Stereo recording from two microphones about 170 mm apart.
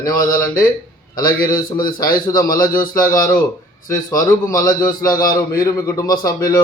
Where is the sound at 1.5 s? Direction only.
55° left (ahead or behind).